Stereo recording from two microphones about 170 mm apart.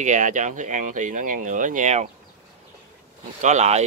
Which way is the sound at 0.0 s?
45° right (ahead or behind).